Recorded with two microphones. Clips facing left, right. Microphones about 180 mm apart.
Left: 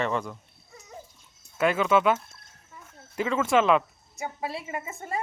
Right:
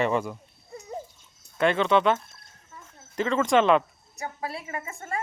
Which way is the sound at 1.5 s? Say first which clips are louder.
Right 1 dB; 5° left (ahead or behind).